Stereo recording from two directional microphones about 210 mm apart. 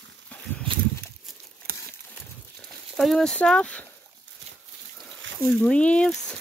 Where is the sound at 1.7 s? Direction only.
45° right (ahead or behind).